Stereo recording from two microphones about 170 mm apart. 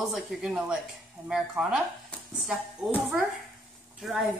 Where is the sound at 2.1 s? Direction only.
Centre (ahead or behind).